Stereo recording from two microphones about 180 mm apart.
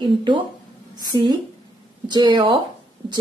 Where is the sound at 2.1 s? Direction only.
25° right (ahead or behind).